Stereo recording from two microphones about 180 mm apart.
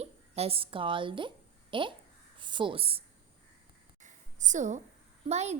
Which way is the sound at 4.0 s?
45° right (ahead or behind).